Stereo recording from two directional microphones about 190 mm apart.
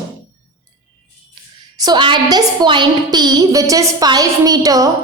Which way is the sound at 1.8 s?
25° right (ahead or behind).